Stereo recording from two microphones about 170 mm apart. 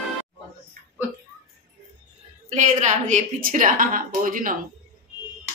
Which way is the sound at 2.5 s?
45° right (ahead or behind).